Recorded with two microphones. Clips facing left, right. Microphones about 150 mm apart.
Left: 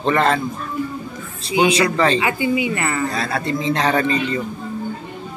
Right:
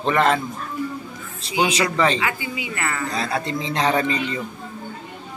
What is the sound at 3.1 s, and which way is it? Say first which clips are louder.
A man's voice: left 2 dB; 25° right (ahead or behind).